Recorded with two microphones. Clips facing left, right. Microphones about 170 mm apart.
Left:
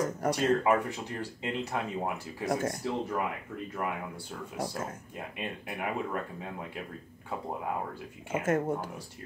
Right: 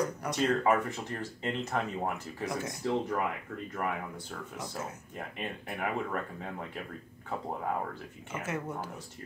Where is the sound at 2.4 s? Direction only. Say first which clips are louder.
Left 6 dB; 50° left (ahead or behind).